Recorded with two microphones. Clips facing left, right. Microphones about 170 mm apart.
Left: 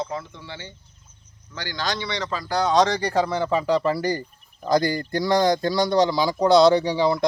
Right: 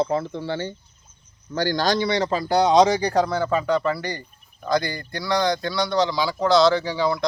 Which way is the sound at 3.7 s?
30° left (ahead or behind).